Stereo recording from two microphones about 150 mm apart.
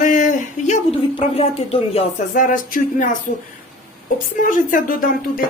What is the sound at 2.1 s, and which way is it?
Speech, 60° left (ahead or behind).